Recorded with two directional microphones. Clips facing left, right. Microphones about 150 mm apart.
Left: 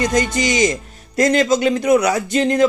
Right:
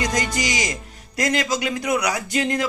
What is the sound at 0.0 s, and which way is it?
Music, 25° left (ahead or behind).